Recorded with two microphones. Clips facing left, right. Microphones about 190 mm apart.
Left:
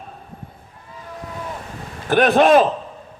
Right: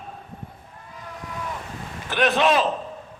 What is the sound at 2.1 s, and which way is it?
Speech, 50° left (ahead or behind).